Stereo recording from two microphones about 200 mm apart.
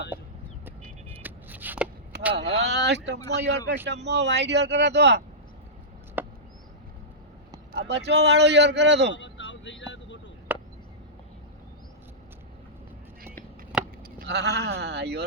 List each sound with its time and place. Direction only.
0.1 s vehicle: 10° right (ahead or behind)
1.2 s a sound: 10° right (ahead or behind)
2.5 s speech: 60° right (ahead or behind)
6.2 s chop: 10° right (ahead or behind)
7.7 s speech: 60° right (ahead or behind)
9.1 s vehicle: 65° left (ahead or behind)
10.5 s a sound: 10° right (ahead or behind)
13.7 s vehicle: 5° right (ahead or behind)
14.2 s speech: 55° right (ahead or behind)